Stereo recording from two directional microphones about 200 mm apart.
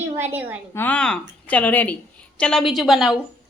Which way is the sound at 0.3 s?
10° right (ahead or behind).